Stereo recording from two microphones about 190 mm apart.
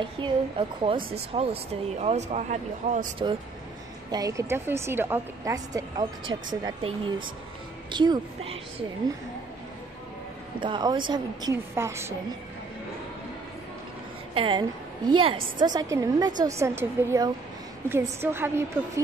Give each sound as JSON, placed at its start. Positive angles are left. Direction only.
{"t": 0.0, "sound": "speech", "side_deg": -25}
{"t": 4.1, "sound": "a woman's voice", "side_deg": -15}
{"t": 10.6, "sound": "a woman's voice", "side_deg": -25}
{"t": 14.3, "sound": "a woman's voice", "side_deg": -25}